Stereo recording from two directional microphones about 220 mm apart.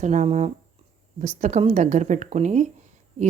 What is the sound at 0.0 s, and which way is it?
Speech, 35° right (ahead or behind).